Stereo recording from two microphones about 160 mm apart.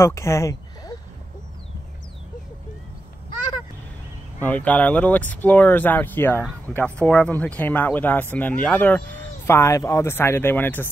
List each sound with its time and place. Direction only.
0.0 s speech: 15° left (ahead or behind)
4.4 s speech: 10° left (ahead or behind)